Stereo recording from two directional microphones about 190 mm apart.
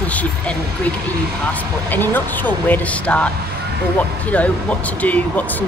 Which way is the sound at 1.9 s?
10° left (ahead or behind).